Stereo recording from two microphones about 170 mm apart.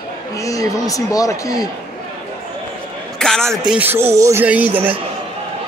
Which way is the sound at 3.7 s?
10° right (ahead or behind).